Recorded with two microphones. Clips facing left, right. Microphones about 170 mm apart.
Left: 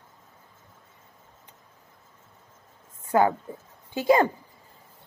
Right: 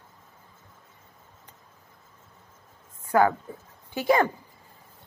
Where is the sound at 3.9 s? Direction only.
25° left (ahead or behind).